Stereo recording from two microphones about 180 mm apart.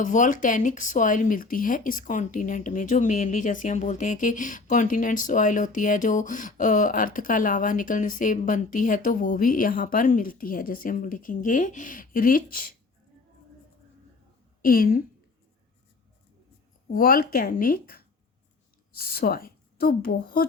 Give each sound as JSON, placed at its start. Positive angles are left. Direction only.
{"t": 0.0, "sound": "speech", "side_deg": 45}
{"t": 14.6, "sound": "a woman's voice", "side_deg": 55}
{"t": 16.9, "sound": "speech", "side_deg": 55}